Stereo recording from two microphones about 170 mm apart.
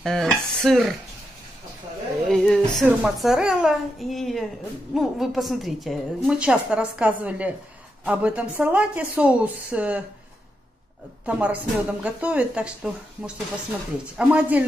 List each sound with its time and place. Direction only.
0.0 s a woman's voice: centre (ahead or behind)
2.2 s a woman's voice: 5° left (ahead or behind)
11.2 s speech: 10° right (ahead or behind)